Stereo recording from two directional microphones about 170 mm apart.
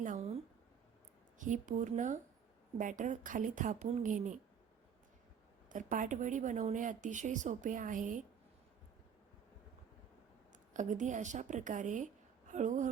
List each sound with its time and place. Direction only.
0.0 s a sound: 45° right (ahead or behind)
1.4 s a woman's voice: 50° right (ahead or behind)
5.6 s a woman's voice: 50° right (ahead or behind)
10.8 s a woman's voice: 45° right (ahead or behind)